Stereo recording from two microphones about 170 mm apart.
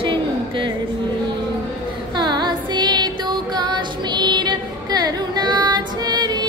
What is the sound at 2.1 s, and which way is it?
Music, 25° right (ahead or behind).